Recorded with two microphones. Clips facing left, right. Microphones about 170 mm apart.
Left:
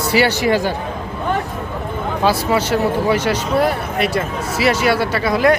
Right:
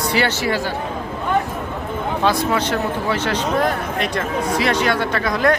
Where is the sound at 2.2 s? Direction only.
5° left (ahead or behind).